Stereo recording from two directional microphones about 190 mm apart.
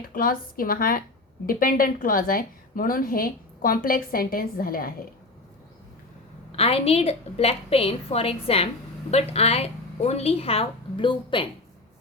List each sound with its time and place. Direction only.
0.1 s a woman's voice: 50° left (ahead or behind)
6.6 s a woman's voice: 30° left (ahead or behind)